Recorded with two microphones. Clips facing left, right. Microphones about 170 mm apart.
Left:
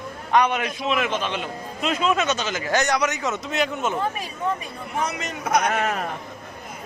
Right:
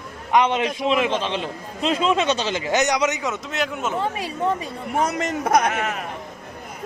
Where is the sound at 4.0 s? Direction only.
30° right (ahead or behind).